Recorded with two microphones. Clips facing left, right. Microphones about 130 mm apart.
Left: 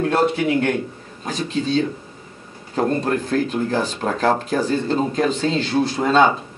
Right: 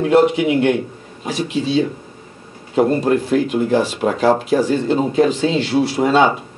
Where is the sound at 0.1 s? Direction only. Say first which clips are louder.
Right 5 dB; 10° right (ahead or behind).